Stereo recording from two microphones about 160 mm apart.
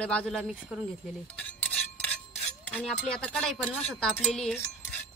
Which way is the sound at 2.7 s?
5° left (ahead or behind).